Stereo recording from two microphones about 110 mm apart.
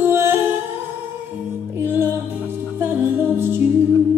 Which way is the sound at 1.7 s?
20° right (ahead or behind).